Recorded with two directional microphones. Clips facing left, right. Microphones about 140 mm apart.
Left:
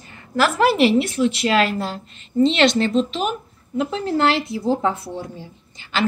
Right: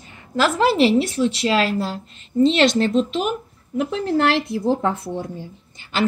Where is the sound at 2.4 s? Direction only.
45° right (ahead or behind).